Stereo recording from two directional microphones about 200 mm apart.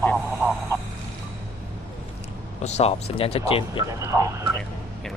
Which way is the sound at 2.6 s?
35° left (ahead or behind).